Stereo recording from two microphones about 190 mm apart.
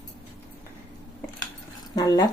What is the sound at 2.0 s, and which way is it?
Speech, 20° left (ahead or behind).